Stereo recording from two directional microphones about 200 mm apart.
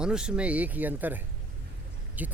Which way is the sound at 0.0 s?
5° right (ahead or behind).